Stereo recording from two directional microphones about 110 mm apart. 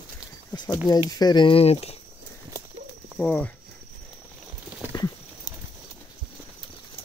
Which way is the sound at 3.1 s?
15° left (ahead or behind).